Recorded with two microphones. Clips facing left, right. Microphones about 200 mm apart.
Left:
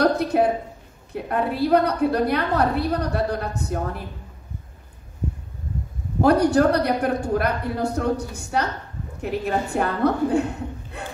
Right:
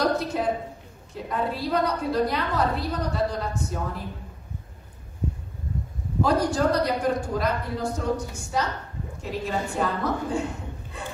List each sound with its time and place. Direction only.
0.0 s a sound: 60° left (ahead or behind)
1.1 s a woman's voice: 60° left (ahead or behind)
6.2 s a woman's voice: 65° left (ahead or behind)